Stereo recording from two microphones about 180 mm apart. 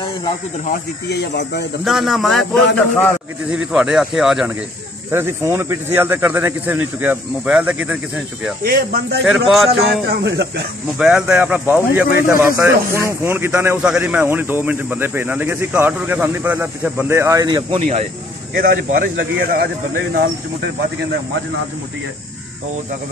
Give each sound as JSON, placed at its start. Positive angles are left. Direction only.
{"t": 1.0, "sound": "speech", "side_deg": 65}
{"t": 1.9, "sound": "a man's voice", "side_deg": 0}
{"t": 5.1, "sound": "speech", "side_deg": -15}
{"t": 8.6, "sound": "speech", "side_deg": -60}
{"t": 9.2, "sound": "a man's voice", "side_deg": 0}
{"t": 10.0, "sound": "speech", "side_deg": -70}
{"t": 11.0, "sound": "speech", "side_deg": -5}
{"t": 18.6, "sound": "speech", "side_deg": -50}